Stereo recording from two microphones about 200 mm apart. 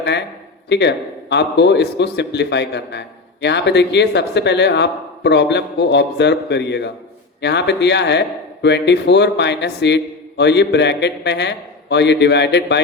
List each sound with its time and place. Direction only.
0.7 s a man's voice: 60° left (ahead or behind)